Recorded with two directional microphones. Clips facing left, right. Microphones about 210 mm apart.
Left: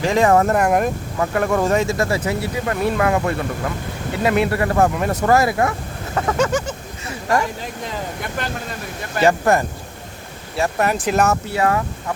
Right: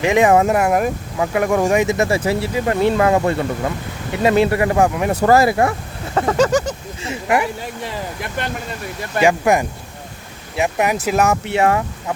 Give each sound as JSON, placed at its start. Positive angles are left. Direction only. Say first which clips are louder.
{"t": 0.0, "sound": "speech", "louder": "right 2 dB", "side_deg": -20}
{"t": 5.2, "sound": "speech", "louder": "right 3 dB", "side_deg": -30}
{"t": 6.3, "sound": "a sound", "louder": "right 4 dB", "side_deg": -40}
{"t": 7.1, "sound": "a sound", "louder": "right 2 dB", "side_deg": -15}
{"t": 9.2, "sound": "speech", "louder": "right 1 dB", "side_deg": -15}
{"t": 11.4, "sound": "speech", "louder": "right 3 dB", "side_deg": -25}